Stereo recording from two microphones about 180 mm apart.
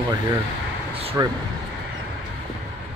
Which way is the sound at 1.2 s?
15° right (ahead or behind).